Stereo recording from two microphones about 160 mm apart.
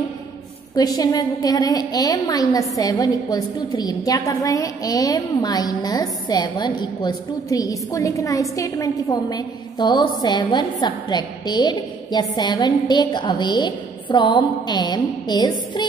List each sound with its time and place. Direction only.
0.7 s a woman's voice: 25° left (ahead or behind)